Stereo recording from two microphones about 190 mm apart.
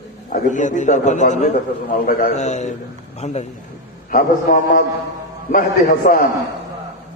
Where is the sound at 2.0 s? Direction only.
50° left (ahead or behind).